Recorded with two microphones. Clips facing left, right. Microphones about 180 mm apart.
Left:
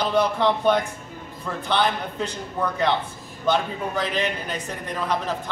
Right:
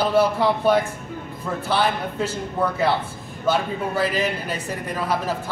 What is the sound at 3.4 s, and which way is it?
A man's voice, 5° right (ahead or behind).